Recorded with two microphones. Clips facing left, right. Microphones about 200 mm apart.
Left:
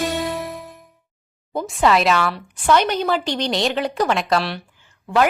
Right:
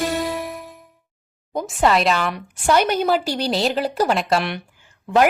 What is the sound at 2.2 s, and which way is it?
A woman's voice, 15° right (ahead or behind).